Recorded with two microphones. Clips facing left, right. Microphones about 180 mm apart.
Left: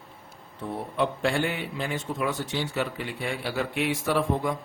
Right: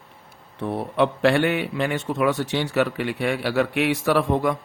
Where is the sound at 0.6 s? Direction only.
75° right (ahead or behind).